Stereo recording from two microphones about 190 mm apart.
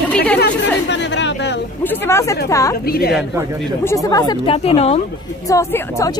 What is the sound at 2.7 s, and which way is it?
Speech, 55° left (ahead or behind).